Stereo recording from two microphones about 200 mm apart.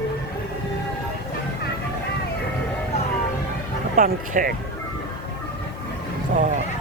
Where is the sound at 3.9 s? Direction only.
40° right (ahead or behind).